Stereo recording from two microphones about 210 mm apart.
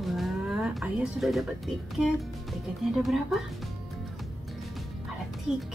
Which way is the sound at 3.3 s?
Centre (ahead or behind).